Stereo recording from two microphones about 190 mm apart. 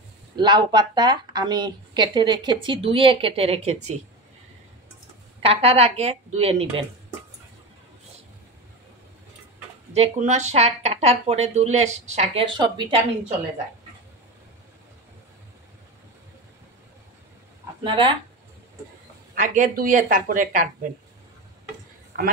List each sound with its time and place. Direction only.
0.4 s a woman's voice: 25° right (ahead or behind)
5.4 s speech: 30° right (ahead or behind)
9.9 s speech: 35° right (ahead or behind)
17.8 s a woman's voice: 25° right (ahead or behind)
19.3 s a woman's voice: 45° right (ahead or behind)